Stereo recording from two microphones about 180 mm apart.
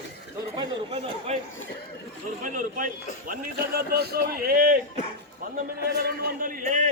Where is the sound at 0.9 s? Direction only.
35° right (ahead or behind).